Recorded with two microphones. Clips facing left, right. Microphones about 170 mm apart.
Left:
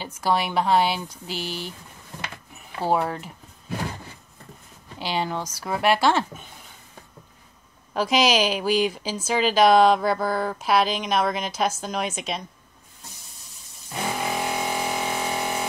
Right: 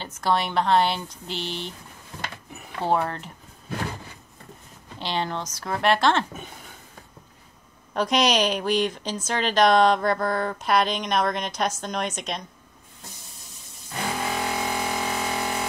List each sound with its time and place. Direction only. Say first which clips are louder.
0.0 s speech: even; 10° left (ahead or behind)
2.8 s speech: left 1 dB; 5° left (ahead or behind)
4.9 s speech: left 1 dB; 10° left (ahead or behind)
7.9 s a woman's voice: left 1 dB; 5° left (ahead or behind)
13.9 s music: left 1 dB; 15° left (ahead or behind)
15.2 s a sound: left 1 dB; 15° left (ahead or behind)